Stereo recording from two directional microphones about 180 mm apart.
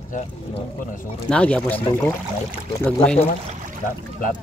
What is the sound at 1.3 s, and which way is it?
Speech, 5° left (ahead or behind).